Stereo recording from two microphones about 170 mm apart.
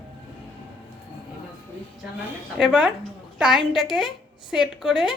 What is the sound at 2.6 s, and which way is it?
A woman's voice, 5° right (ahead or behind).